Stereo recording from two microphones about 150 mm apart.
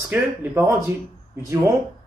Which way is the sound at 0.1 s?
15° right (ahead or behind).